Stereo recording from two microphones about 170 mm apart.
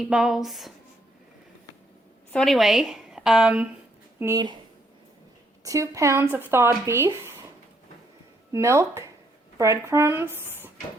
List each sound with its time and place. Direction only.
0.0 s speech: 5° right (ahead or behind)
2.3 s a woman's voice: centre (ahead or behind)
4.2 s speech: 15° right (ahead or behind)
5.6 s speech: 20° right (ahead or behind)
8.5 s speech: 15° right (ahead or behind)